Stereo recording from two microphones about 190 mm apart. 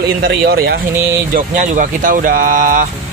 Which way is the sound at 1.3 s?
45° right (ahead or behind).